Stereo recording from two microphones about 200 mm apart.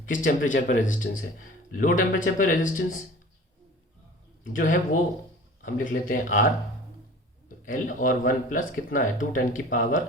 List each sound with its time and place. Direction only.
0.1 s a man's voice: 40° left (ahead or behind)
4.4 s a man's voice: 40° left (ahead or behind)